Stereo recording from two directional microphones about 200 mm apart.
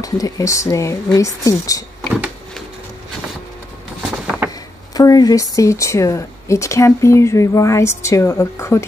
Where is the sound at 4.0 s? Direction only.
5° right (ahead or behind).